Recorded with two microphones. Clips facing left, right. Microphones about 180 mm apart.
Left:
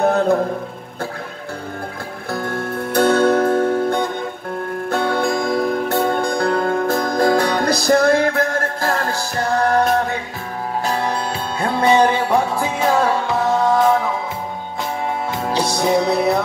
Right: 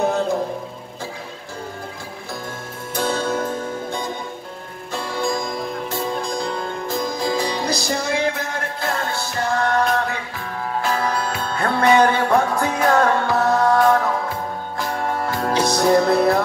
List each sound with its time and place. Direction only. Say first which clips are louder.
0.0 s a sound: left 4 dB; 60° left (ahead or behind)
2.3 s music: left 11 dB; 65° left (ahead or behind)
9.0 s music: left 2 dB; 40° left (ahead or behind)
11.6 s music: left 1 dB; 25° left (ahead or behind)
12.0 s music: left 1 dB; 10° left (ahead or behind)
15.4 s music: right 1 dB; centre (ahead or behind)